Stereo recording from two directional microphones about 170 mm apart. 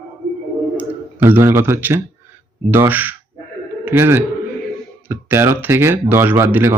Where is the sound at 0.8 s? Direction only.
10° right (ahead or behind).